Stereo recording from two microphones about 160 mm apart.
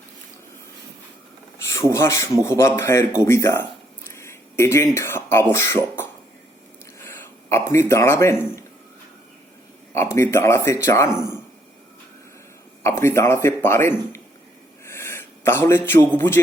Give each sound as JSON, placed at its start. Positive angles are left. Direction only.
{"t": 1.6, "sound": "speech", "side_deg": 20}
{"t": 4.2, "sound": "a sound", "side_deg": 15}
{"t": 4.9, "sound": "speech", "side_deg": 15}
{"t": 7.5, "sound": "speech", "side_deg": 15}
{"t": 9.9, "sound": "speech", "side_deg": 15}
{"t": 12.8, "sound": "speech", "side_deg": 15}
{"t": 14.8, "sound": "a sound", "side_deg": 15}
{"t": 15.9, "sound": "speech", "side_deg": 15}